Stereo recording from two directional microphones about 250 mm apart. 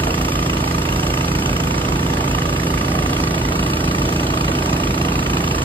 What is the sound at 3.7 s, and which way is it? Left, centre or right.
Vehicle, centre.